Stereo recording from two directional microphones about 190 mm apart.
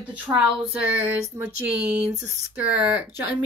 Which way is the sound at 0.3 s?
10° right (ahead or behind).